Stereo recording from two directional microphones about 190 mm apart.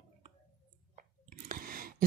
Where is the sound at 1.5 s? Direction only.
50° right (ahead or behind).